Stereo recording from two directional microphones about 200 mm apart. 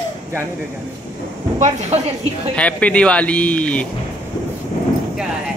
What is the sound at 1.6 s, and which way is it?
Speech, 35° right (ahead or behind).